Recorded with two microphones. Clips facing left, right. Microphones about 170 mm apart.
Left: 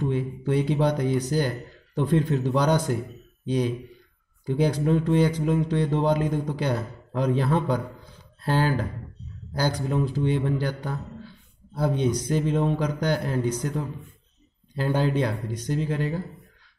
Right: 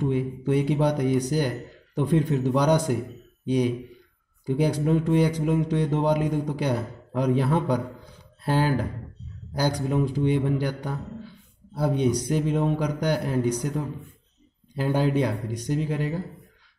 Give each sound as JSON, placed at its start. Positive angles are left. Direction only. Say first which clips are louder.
{"t": 0.0, "sound": "a man's voice", "louder": "right 2 dB", "side_deg": -15}